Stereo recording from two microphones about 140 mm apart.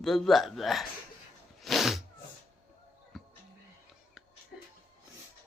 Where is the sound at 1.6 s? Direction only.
Centre (ahead or behind).